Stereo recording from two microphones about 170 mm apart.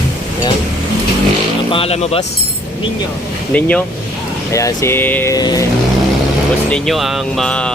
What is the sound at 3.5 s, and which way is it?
Speech, 10° left (ahead or behind).